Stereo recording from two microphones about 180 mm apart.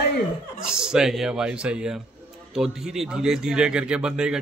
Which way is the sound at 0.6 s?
5° right (ahead or behind).